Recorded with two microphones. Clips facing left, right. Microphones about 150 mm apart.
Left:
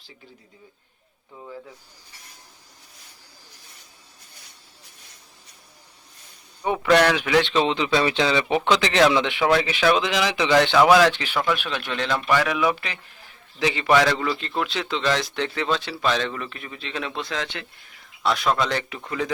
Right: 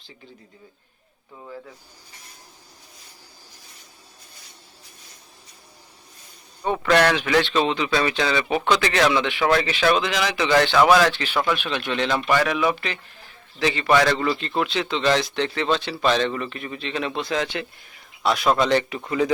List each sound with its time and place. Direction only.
6.6 s speech: 5° left (ahead or behind)
11.3 s a man's voice: centre (ahead or behind)